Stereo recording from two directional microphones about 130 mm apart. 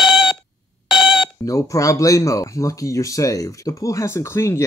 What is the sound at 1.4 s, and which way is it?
Speech, 25° left (ahead or behind).